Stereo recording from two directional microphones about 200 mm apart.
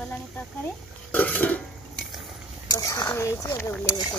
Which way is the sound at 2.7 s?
20° left (ahead or behind).